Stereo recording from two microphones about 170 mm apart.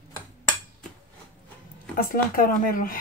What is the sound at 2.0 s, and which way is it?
Speech, 55° left (ahead or behind).